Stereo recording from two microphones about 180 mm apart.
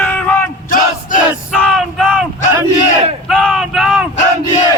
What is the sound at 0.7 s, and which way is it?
Crowd, 45° left (ahead or behind).